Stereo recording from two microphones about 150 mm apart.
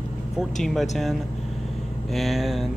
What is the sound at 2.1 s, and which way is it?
Speech, centre (ahead or behind).